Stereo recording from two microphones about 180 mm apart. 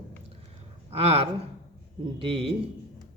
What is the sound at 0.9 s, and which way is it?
A man's voice, 30° right (ahead or behind).